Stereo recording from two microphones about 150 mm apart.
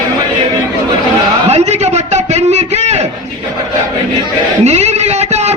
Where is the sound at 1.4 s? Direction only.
45° right (ahead or behind).